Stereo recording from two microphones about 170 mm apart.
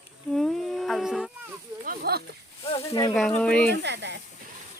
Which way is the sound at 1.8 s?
60° right (ahead or behind).